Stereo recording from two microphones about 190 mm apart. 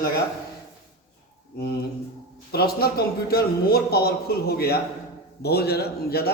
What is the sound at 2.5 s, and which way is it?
A man's voice, 55° left (ahead or behind).